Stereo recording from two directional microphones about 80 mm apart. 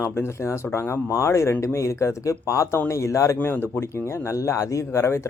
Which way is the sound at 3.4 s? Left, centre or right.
Left.